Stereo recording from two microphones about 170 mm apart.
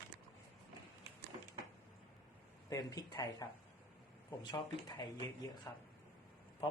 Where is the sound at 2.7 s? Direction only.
20° left (ahead or behind).